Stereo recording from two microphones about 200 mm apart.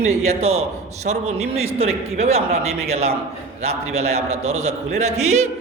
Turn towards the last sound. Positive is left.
turn(degrees=-35)  # may be behind; listen again after turning